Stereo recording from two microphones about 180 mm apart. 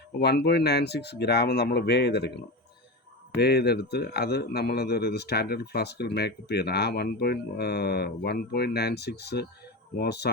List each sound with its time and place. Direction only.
0.2 s a man's voice: 65° left (ahead or behind)